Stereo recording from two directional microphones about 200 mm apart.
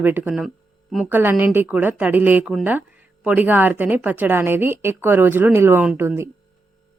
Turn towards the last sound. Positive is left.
turn(degrees=-10)  # may be behind; listen again after turning